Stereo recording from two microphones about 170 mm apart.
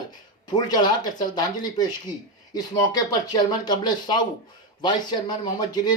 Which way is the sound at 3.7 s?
25° left (ahead or behind).